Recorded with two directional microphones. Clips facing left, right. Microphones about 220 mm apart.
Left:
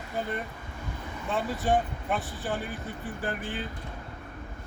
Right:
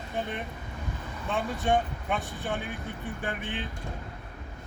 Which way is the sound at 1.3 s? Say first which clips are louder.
Even; centre (ahead or behind).